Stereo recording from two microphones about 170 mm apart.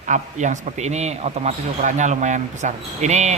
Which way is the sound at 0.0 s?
45° right (ahead or behind).